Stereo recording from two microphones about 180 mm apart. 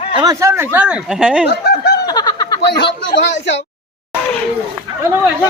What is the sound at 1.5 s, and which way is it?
Snicker, 65° left (ahead or behind).